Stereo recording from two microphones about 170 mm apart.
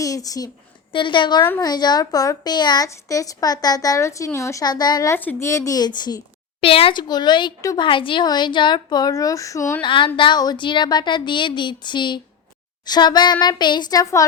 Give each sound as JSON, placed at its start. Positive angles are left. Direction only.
{"t": 0.0, "sound": "a woman's voice", "side_deg": 20}
{"t": 5.1, "sound": "a child's voice", "side_deg": 10}
{"t": 9.8, "sound": "a child's voice", "side_deg": 30}